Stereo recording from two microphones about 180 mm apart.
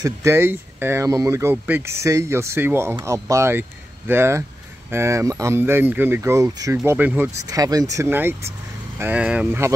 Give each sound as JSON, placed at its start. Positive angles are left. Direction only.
{"t": 0.0, "sound": "speech", "side_deg": -15}